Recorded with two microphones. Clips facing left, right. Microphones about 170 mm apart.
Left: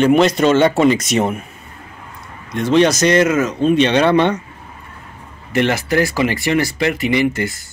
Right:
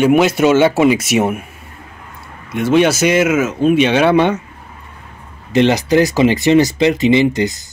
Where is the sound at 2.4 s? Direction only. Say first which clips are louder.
Right 1 dB; 5° right (ahead or behind).